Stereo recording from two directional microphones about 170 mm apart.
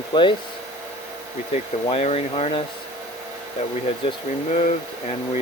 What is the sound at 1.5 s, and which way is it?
Speech, 40° left (ahead or behind).